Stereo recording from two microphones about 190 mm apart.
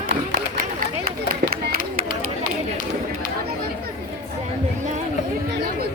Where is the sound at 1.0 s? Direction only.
50° right (ahead or behind).